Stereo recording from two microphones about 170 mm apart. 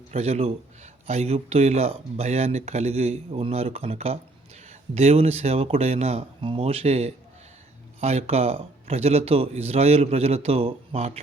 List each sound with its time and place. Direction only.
0.1 s speech: 40° right (ahead or behind)